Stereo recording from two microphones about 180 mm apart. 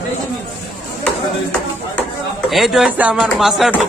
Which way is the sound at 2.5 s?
Centre (ahead or behind).